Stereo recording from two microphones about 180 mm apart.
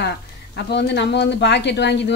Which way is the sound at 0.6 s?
70° left (ahead or behind).